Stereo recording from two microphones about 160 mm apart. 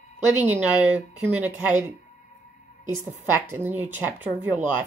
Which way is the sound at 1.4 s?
10° right (ahead or behind).